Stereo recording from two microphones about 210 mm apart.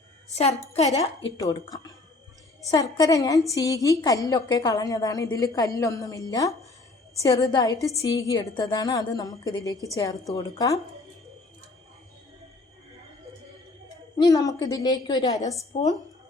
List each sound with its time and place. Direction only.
0.3 s a woman's voice: 30° left (ahead or behind)
0.9 s a woman's voice: 15° left (ahead or behind)
14.2 s a woman's voice: 15° left (ahead or behind)